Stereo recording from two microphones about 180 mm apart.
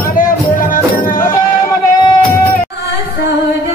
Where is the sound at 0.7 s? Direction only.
50° left (ahead or behind).